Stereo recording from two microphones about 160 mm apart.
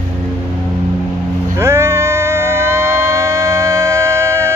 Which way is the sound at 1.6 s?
15° right (ahead or behind).